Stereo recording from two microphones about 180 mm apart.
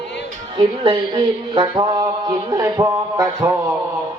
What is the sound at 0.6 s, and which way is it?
Mantra, 30° right (ahead or behind).